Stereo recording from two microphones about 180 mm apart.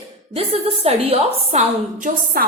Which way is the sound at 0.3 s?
35° right (ahead or behind).